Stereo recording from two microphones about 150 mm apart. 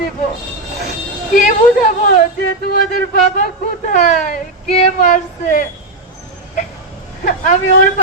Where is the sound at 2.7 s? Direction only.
65° left (ahead or behind).